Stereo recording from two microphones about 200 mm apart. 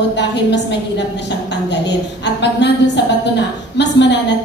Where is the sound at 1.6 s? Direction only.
60° left (ahead or behind).